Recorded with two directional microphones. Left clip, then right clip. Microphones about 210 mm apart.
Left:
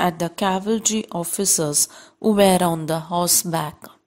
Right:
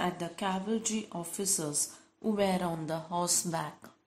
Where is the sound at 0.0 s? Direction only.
45° left (ahead or behind).